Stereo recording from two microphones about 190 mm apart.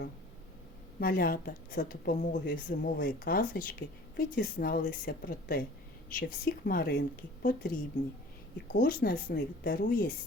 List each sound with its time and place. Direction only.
0.9 s a woman's voice: 50° left (ahead or behind)